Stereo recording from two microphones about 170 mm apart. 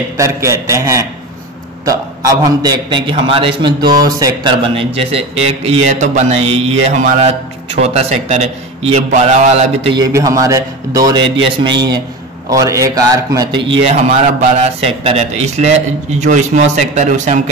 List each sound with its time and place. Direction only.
0.2 s a man's voice: 15° right (ahead or behind)
2.4 s a man's voice: 25° right (ahead or behind); by 9.9 s 40° right (ahead or behind)
9.9 s a man's voice: 20° right (ahead or behind)
14.0 s a man's voice: 45° right (ahead or behind)